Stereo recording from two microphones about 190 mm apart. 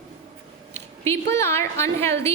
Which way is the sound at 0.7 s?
15° left (ahead or behind).